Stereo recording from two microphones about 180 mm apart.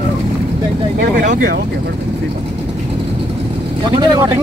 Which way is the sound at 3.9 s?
25° right (ahead or behind).